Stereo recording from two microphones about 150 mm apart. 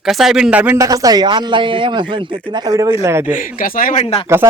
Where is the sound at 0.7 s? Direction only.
20° right (ahead or behind).